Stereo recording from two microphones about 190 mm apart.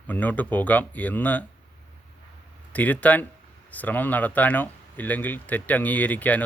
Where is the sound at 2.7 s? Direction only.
10° left (ahead or behind).